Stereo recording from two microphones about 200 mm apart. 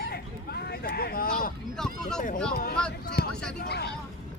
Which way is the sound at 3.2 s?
50° left (ahead or behind).